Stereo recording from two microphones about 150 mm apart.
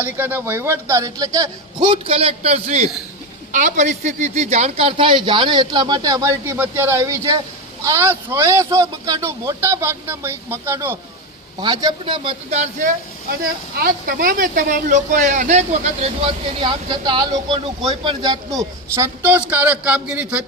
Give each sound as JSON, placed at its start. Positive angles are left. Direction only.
{"t": 0.0, "sound": "a man's voice", "side_deg": -10}
{"t": 1.9, "sound": "a man's voice", "side_deg": -40}
{"t": 11.6, "sound": "speech", "side_deg": -30}
{"t": 13.4, "sound": "speech", "side_deg": -80}